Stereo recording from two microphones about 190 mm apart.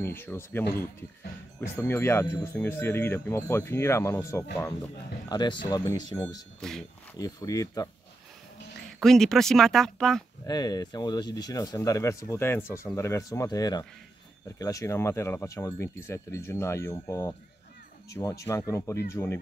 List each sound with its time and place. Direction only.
0.0 s speech: 10° left (ahead or behind)
6.6 s speech: centre (ahead or behind)
7.2 s speech: 20° left (ahead or behind)
9.0 s speech: centre (ahead or behind)
10.4 s speech: 20° left (ahead or behind)